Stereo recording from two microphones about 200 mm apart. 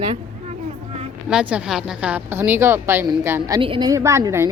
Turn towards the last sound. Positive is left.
turn(degrees=-15)  # may be behind; listen again after turning